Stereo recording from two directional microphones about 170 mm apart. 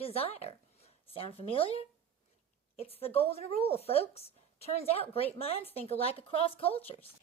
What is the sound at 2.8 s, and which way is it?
A woman's voice, 35° left (ahead or behind).